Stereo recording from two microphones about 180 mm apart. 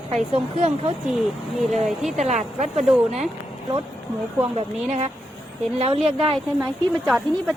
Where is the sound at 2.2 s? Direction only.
40° right (ahead or behind).